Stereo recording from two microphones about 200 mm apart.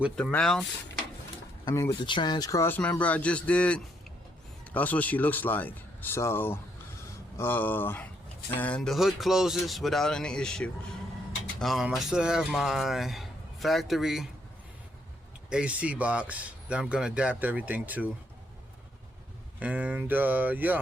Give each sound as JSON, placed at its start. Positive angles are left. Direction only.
{"t": 0.2, "sound": "speech", "side_deg": 5}
{"t": 1.6, "sound": "speech", "side_deg": 15}
{"t": 15.4, "sound": "speech", "side_deg": -5}
{"t": 19.5, "sound": "speech", "side_deg": -5}